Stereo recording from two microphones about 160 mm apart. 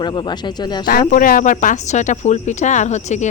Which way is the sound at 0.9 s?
60° left (ahead or behind).